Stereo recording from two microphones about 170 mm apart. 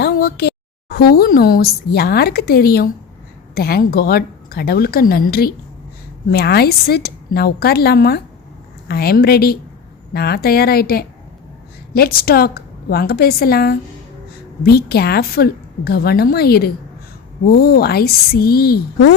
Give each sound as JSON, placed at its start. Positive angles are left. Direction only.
{"t": 0.0, "sound": "a woman's voice", "side_deg": 70}